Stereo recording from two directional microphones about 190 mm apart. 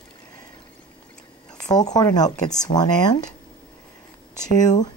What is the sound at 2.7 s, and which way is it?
Speech, 45° left (ahead or behind).